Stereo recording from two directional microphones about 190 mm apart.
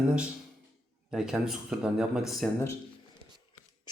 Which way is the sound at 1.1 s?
5° right (ahead or behind).